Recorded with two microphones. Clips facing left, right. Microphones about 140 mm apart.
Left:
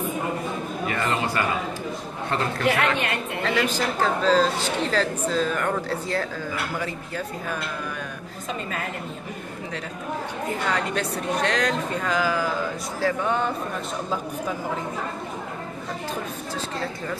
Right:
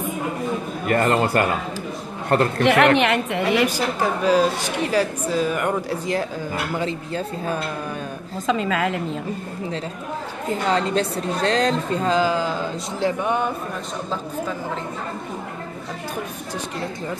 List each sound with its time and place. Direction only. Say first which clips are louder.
0.8 s a woman's voice: right 8 dB; 50° right (ahead or behind); by 3.3 s 85° right
3.4 s a woman's voice: right 2 dB; 10° right (ahead or behind)
8.5 s a woman's voice: right 9 dB; 90° right
10.7 s a woman's voice: right 8 dB; 30° right (ahead or behind)
13.0 s a woman's voice: right 2 dB; 15° right (ahead or behind)